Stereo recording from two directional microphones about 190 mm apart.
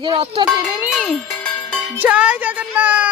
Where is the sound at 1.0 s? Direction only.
5° left (ahead or behind).